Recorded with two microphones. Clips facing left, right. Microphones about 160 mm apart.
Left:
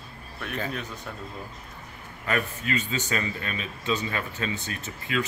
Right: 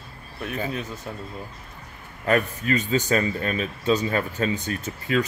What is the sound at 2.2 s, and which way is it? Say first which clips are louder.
Speech: right 6 dB; 40° right (ahead or behind).